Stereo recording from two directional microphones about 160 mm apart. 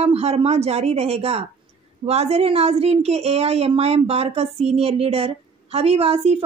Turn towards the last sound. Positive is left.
turn(degrees=-40)  # may be behind; listen again after turning